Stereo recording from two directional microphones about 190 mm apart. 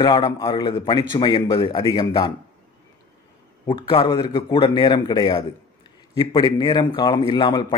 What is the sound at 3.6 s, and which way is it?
A man's voice, 25° left (ahead or behind).